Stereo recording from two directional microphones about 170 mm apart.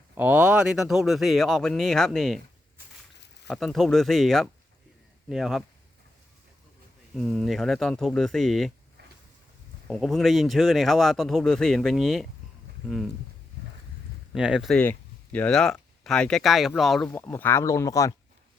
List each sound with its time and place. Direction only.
0.2 s speech: 10° right (ahead or behind)
3.4 s speech: 5° left (ahead or behind)
7.2 s speech: centre (ahead or behind)
9.8 s speech: centre (ahead or behind)
14.3 s speech: 5° right (ahead or behind)
14.8 s speech: 10° left (ahead or behind)